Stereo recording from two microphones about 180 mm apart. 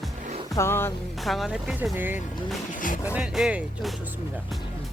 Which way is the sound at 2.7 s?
45° left (ahead or behind).